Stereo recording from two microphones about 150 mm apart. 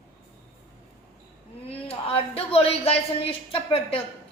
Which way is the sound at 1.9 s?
40° left (ahead or behind).